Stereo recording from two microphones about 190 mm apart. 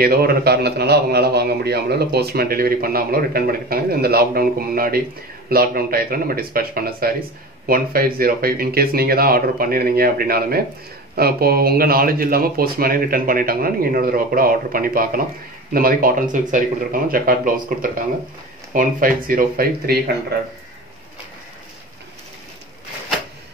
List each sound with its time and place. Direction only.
0.0 s a man's voice: 55° right (ahead or behind)